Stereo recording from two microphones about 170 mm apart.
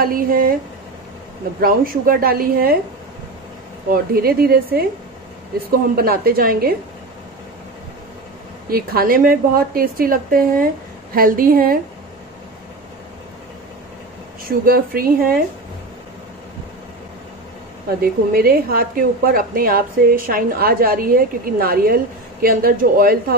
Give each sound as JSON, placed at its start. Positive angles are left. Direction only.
{"t": 0.0, "sound": "a woman's voice", "side_deg": -60}
{"t": 1.6, "sound": "a woman's voice", "side_deg": -60}
{"t": 3.9, "sound": "a woman's voice", "side_deg": -65}
{"t": 5.9, "sound": "a woman's voice", "side_deg": -60}
{"t": 8.6, "sound": "a woman's voice", "side_deg": -60}
{"t": 14.4, "sound": "a woman's voice", "side_deg": -60}
{"t": 18.0, "sound": "a woman's voice", "side_deg": -60}